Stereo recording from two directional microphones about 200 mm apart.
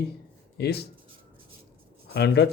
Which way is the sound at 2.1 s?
55° left (ahead or behind).